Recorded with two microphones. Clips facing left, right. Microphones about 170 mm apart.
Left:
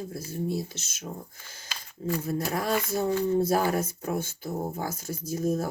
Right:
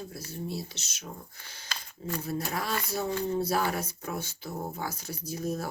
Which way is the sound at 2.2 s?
50° left (ahead or behind).